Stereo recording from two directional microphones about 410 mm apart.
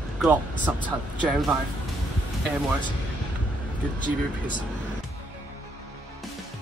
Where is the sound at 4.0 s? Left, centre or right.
Centre.